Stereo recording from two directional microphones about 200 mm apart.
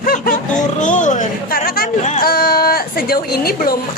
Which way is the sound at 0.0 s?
45° left (ahead or behind).